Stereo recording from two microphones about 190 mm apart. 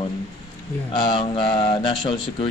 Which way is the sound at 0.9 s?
25° left (ahead or behind).